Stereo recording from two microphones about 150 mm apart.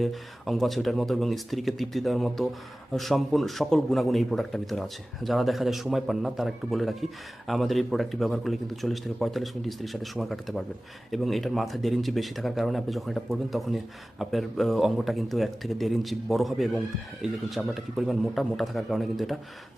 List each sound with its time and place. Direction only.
0.0 s speech: centre (ahead or behind)